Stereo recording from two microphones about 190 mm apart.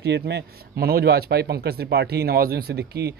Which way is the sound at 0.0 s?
60° right (ahead or behind).